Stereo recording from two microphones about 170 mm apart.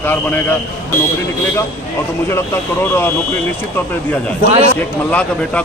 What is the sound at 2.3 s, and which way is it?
Speech, 15° left (ahead or behind).